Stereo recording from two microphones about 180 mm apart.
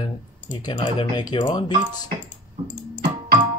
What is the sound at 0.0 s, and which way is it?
Speech, 25° left (ahead or behind).